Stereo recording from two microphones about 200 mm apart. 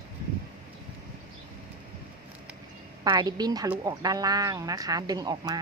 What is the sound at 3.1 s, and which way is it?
Speech, 20° right (ahead or behind).